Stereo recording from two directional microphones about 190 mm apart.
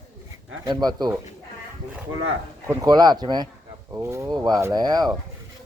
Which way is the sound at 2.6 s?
20° right (ahead or behind).